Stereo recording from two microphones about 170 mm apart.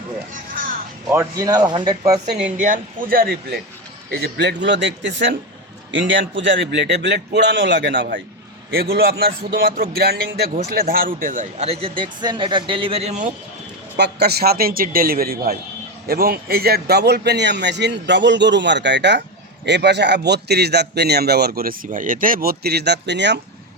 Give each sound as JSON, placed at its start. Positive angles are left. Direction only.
{"t": 1.1, "sound": "speech", "side_deg": -20}
{"t": 2.6, "sound": "a man's voice", "side_deg": -50}
{"t": 4.1, "sound": "a man's voice", "side_deg": -80}
{"t": 8.7, "sound": "a man's voice", "side_deg": -65}
{"t": 13.9, "sound": "a man's voice", "side_deg": -75}